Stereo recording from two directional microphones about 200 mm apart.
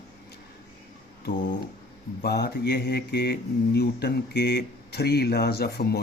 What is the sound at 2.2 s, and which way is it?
Speech, 50° left (ahead or behind).